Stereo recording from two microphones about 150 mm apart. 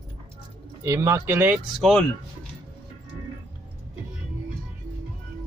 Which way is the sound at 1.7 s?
Centre (ahead or behind).